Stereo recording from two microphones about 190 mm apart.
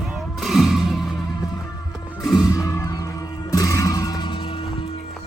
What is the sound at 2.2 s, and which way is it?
Music, 15° left (ahead or behind).